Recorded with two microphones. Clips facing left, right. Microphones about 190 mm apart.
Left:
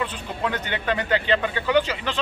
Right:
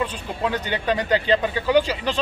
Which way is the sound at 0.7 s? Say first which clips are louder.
Right 3 dB; 35° right (ahead or behind).